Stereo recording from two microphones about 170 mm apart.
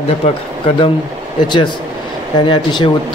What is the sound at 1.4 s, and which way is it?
Speech, 25° left (ahead or behind).